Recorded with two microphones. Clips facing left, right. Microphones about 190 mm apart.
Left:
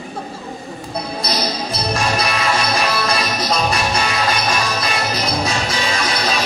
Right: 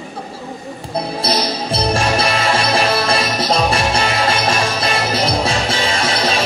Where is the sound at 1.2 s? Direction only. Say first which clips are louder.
Right 2 dB; 30° right (ahead or behind).